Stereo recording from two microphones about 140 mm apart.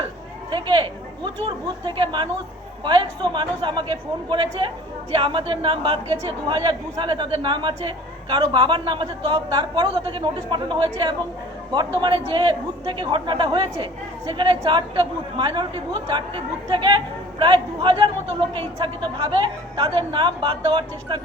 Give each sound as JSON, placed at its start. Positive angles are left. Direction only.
{"t": 0.5, "sound": "a woman's voice", "side_deg": -35}